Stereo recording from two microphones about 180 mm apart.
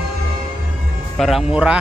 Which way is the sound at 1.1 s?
Centre (ahead or behind).